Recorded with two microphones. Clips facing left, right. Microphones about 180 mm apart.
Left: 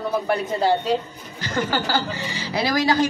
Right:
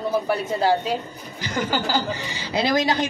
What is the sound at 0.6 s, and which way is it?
A woman's voice, 10° right (ahead or behind).